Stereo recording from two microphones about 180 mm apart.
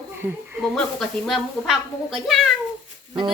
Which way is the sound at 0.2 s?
10° right (ahead or behind).